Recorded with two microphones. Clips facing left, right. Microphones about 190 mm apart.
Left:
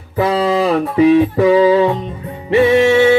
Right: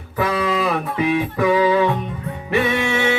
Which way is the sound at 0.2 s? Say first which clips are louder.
Left 6 dB; 25° left (ahead or behind).